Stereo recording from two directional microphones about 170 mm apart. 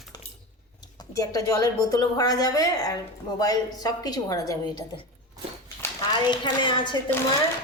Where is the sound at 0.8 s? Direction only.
20° left (ahead or behind).